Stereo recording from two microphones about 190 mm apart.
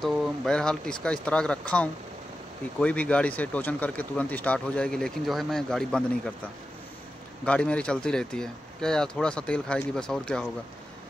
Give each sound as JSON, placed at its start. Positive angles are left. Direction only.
{"t": 0.0, "sound": "speech", "side_deg": 0}
{"t": 7.4, "sound": "speech", "side_deg": 5}